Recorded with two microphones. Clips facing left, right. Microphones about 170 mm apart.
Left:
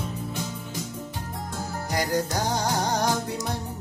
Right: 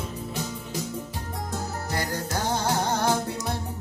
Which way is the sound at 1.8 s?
15° left (ahead or behind).